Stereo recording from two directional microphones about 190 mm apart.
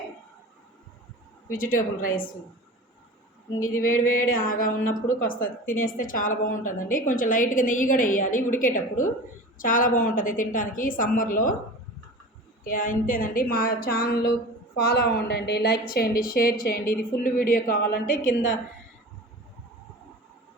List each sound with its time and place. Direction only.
1.5 s a woman's voice: 45° left (ahead or behind)
3.8 s a woman's voice: 45° left (ahead or behind)
4.0 s a sound: 90° left
4.4 s a woman's voice: 45° left (ahead or behind)
12.6 s a woman's voice: 45° left (ahead or behind)